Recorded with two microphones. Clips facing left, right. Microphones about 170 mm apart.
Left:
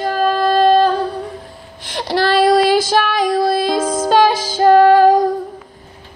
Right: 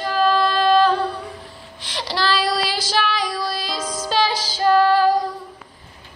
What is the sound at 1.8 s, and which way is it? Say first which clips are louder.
Child singing: left 7 dB; 50° left (ahead or behind).